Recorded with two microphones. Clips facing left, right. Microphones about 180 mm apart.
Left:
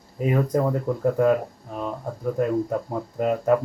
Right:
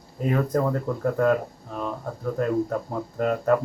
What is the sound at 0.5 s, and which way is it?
Speech, 10° left (ahead or behind).